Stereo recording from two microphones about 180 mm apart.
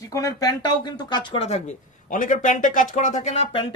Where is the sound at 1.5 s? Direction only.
45° left (ahead or behind).